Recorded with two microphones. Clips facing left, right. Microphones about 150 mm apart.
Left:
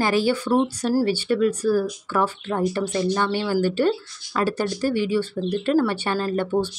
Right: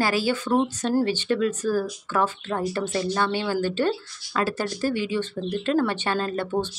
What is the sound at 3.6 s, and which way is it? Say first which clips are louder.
Speech: left 3 dB; 10° left (ahead or behind).